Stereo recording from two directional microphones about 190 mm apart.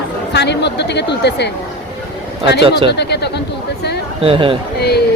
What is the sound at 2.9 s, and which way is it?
Speech, 60° left (ahead or behind).